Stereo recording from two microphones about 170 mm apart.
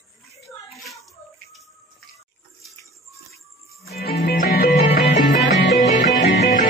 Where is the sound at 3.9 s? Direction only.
65° left (ahead or behind); by 5.7 s 85° left.